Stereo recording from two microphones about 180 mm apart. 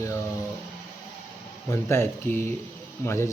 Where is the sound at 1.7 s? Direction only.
15° left (ahead or behind).